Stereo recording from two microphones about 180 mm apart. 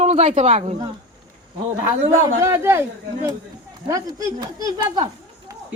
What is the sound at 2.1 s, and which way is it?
Speech, 15° right (ahead or behind).